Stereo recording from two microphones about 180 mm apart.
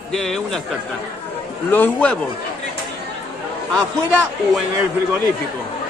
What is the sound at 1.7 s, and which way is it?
Speech, 10° left (ahead or behind).